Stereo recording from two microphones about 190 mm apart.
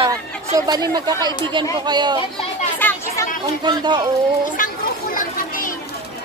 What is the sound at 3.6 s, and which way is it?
Speech, 20° right (ahead or behind).